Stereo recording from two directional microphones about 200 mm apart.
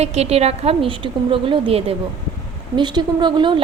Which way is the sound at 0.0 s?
35° right (ahead or behind).